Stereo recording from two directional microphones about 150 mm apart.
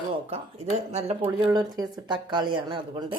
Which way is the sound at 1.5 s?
30° right (ahead or behind).